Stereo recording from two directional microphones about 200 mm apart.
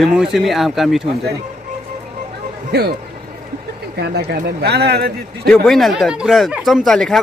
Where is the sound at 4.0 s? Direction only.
55° right (ahead or behind).